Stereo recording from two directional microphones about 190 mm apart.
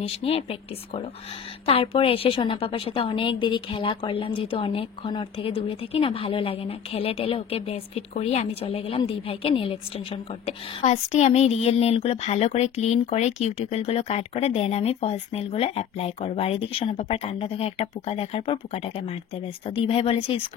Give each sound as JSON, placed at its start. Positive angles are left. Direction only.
{"t": 0.0, "sound": "a woman's voice", "side_deg": 30}